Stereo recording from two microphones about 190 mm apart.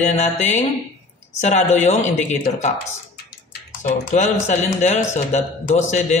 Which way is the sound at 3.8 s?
40° left (ahead or behind).